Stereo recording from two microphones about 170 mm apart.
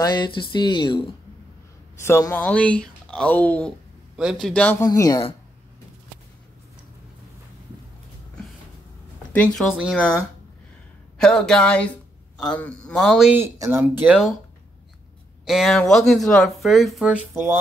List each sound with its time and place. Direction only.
0.0 s speech: 25° left (ahead or behind)
2.0 s speech: 15° left (ahead or behind)
4.2 s speech: centre (ahead or behind)
4.8 s speech: 20° left (ahead or behind)
9.3 s a man's voice: 5° left (ahead or behind)
13.3 s speech: 15° right (ahead or behind)
15.4 s speech: centre (ahead or behind)
17.3 s speech: 15° right (ahead or behind)